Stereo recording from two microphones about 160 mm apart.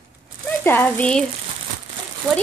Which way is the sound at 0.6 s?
10° left (ahead or behind).